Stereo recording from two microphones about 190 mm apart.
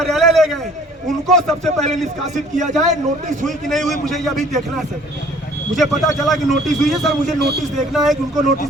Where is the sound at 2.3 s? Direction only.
40° right (ahead or behind).